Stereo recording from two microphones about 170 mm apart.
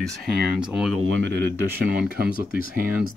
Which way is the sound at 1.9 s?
65° right (ahead or behind).